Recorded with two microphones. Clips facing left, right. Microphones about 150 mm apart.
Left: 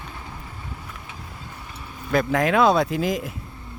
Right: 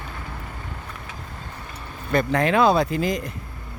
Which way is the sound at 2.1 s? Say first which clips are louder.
Even; centre (ahead or behind).